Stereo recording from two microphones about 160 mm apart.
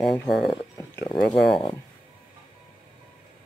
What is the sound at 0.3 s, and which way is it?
Speech, centre (ahead or behind).